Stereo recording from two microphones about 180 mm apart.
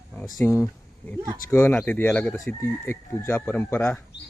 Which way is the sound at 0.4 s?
15° left (ahead or behind).